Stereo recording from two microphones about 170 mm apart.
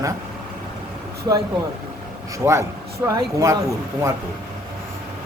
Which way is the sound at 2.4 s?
15° right (ahead or behind).